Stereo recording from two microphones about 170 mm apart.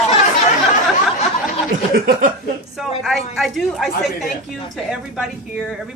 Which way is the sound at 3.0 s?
Centre (ahead or behind).